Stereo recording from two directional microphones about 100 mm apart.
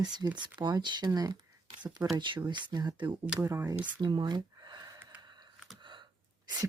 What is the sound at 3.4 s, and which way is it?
Speech, 25° right (ahead or behind).